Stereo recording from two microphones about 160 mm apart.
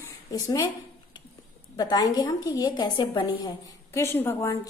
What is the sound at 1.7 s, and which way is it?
A woman's voice, 25° left (ahead or behind).